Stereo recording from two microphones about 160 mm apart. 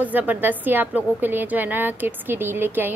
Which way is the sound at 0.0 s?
10° right (ahead or behind).